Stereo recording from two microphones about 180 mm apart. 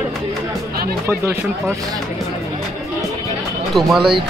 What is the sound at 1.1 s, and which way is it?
Speech, 10° right (ahead or behind).